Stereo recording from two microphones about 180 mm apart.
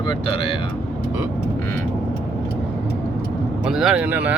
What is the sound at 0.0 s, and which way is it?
Speech, 30° left (ahead or behind).